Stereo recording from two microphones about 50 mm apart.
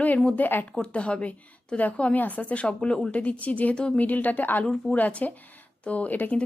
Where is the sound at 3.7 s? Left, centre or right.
Centre.